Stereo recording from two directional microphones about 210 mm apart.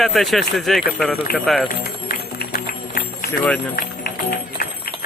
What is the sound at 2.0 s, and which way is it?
Music, 45° left (ahead or behind).